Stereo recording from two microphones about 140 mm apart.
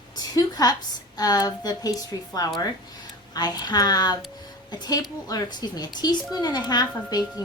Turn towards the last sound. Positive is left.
turn(degrees=30)  # may be behind; listen again after turning